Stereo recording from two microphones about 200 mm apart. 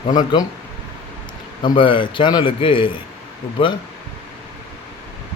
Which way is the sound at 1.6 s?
25° left (ahead or behind).